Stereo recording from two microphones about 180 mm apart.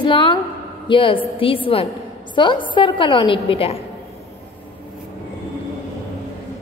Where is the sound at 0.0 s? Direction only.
30° left (ahead or behind).